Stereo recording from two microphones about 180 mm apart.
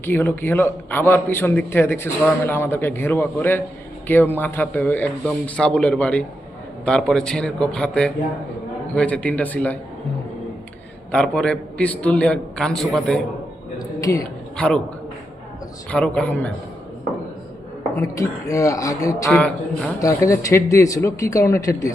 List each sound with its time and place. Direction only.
0.0 s a man's voice: 10° left (ahead or behind)
11.1 s a man's voice: 5° left (ahead or behind)
13.7 s a sound: 20° left (ahead or behind)
14.5 s a man's voice: 5° left (ahead or behind)
15.9 s a man's voice: 5° left (ahead or behind)
18.0 s speech: 20° left (ahead or behind)
19.3 s a man's voice: 5° left (ahead or behind)
20.0 s a man's voice: 15° left (ahead or behind)